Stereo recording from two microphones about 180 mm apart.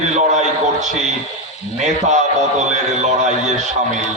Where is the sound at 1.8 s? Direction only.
40° right (ahead or behind).